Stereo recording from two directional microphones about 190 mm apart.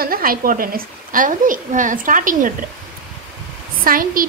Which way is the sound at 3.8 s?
50° right (ahead or behind).